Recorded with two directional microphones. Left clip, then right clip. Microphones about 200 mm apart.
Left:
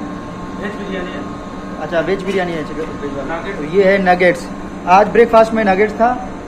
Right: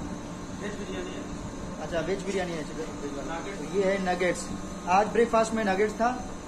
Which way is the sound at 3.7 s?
20° left (ahead or behind).